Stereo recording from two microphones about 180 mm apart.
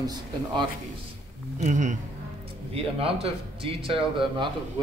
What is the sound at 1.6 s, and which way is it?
Speech, 40° right (ahead or behind).